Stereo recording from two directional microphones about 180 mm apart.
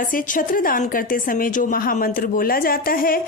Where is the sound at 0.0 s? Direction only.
50° left (ahead or behind).